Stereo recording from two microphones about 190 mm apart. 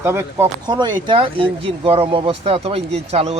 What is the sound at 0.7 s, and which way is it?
Speech, 25° right (ahead or behind).